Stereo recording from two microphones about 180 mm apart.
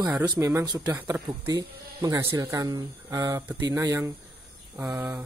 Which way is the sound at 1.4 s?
20° right (ahead or behind).